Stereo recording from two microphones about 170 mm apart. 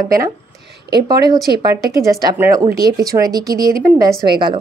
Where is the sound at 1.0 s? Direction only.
25° right (ahead or behind).